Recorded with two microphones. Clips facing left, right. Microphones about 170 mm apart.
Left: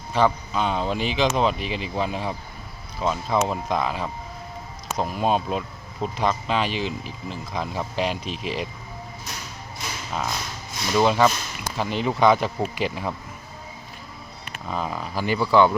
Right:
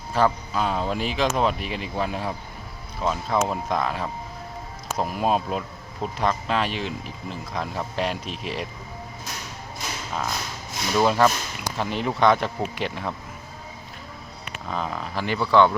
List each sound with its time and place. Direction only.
0.1 s speech: centre (ahead or behind)
10.1 s music: centre (ahead or behind)
10.9 s speech: centre (ahead or behind)
14.7 s speech: 5° left (ahead or behind)